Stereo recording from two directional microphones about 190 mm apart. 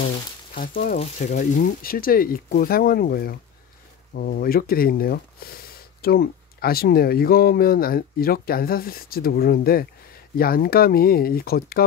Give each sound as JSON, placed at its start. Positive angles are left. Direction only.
{"t": 0.6, "sound": "speech", "side_deg": 45}
{"t": 0.9, "sound": "speech", "side_deg": 35}